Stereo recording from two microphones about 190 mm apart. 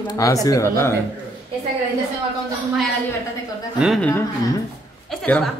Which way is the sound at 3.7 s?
5° right (ahead or behind).